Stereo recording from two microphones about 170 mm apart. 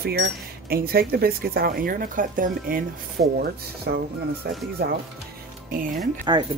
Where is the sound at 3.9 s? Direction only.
70° right (ahead or behind).